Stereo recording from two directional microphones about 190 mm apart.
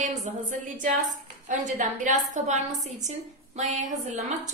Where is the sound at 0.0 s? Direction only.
40° right (ahead or behind).